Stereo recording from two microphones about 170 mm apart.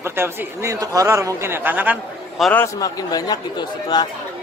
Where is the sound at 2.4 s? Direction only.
Centre (ahead or behind).